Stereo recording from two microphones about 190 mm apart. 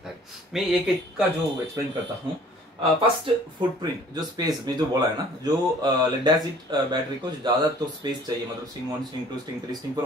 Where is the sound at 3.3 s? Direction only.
25° right (ahead or behind).